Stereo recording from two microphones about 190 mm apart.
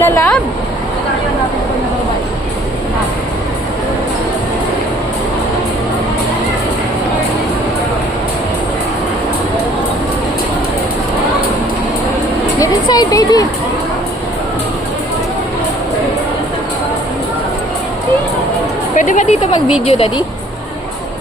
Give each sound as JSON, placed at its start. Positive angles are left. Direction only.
{"t": 0.0, "sound": "a sound", "side_deg": 10}
{"t": 12.5, "sound": "speech", "side_deg": 20}
{"t": 18.9, "sound": "speech", "side_deg": 40}